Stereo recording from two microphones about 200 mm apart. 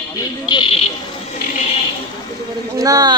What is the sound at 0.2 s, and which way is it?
Speech, 20° left (ahead or behind).